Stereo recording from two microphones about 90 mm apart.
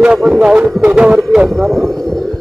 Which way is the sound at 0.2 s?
Centre (ahead or behind).